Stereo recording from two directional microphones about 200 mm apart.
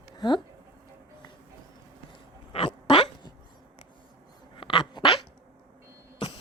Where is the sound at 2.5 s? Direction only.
30° left (ahead or behind).